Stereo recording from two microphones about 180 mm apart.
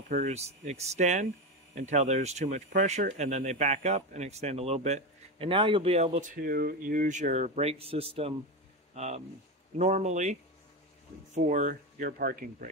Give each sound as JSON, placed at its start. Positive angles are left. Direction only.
{"t": 0.1, "sound": "speech", "side_deg": -40}
{"t": 11.3, "sound": "speech", "side_deg": -45}